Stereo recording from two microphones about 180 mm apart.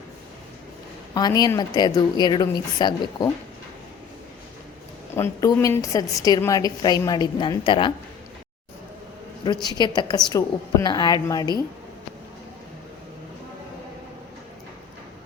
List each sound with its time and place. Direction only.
1.1 s a woman's voice: 20° left (ahead or behind)
5.1 s a woman's voice: 15° left (ahead or behind)
9.6 s a woman's voice: 25° left (ahead or behind)